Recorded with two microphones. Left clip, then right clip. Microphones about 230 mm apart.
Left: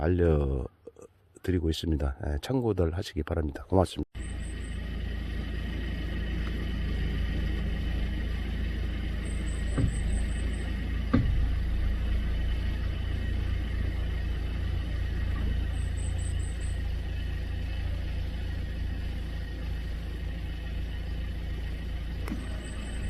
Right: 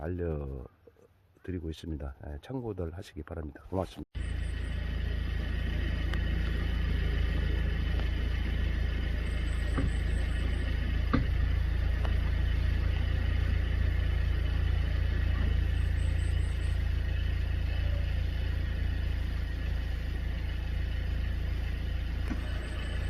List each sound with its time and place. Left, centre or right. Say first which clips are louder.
0.0 s speech: left 10 dB; left
9.8 s music: left 3 dB; centre